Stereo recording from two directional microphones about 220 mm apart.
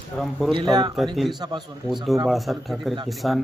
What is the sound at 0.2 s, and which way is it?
Speech, centre (ahead or behind).